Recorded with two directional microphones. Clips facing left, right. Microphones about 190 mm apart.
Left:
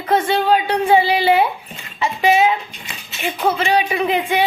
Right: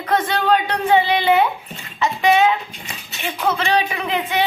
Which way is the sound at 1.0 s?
35° left (ahead or behind).